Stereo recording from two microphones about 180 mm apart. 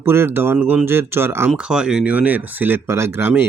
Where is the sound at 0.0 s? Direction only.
15° right (ahead or behind).